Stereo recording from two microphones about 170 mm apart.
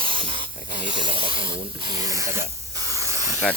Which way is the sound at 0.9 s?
30° right (ahead or behind).